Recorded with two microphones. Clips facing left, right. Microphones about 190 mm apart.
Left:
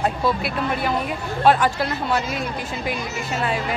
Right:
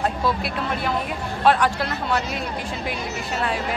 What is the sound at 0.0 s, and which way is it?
Speech, 5° left (ahead or behind).